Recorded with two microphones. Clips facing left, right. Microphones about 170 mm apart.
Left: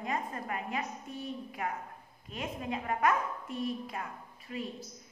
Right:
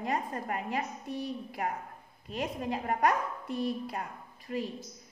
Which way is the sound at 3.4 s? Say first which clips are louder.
Right 3 dB; 75° right (ahead or behind).